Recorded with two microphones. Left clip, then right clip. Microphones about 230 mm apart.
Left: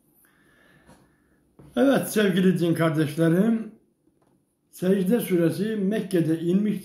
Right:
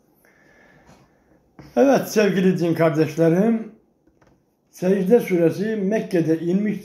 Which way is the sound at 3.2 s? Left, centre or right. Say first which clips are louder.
Right 4 dB; centre.